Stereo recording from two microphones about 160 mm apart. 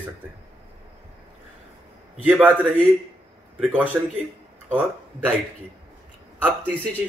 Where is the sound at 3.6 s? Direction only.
10° right (ahead or behind).